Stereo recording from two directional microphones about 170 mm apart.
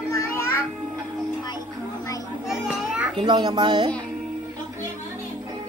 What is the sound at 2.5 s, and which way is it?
Children playing, 5° right (ahead or behind).